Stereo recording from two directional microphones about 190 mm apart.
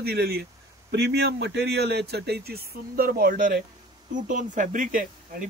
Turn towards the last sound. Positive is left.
turn(degrees=-45)  # may be behind; listen again after turning